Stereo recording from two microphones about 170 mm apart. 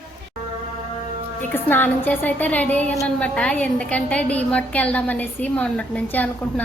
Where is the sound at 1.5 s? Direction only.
10° left (ahead or behind).